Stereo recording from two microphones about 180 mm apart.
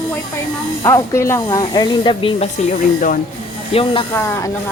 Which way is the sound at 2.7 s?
50° left (ahead or behind).